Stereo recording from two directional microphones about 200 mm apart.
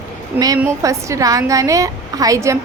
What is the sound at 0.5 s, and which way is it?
A woman's voice, 15° right (ahead or behind).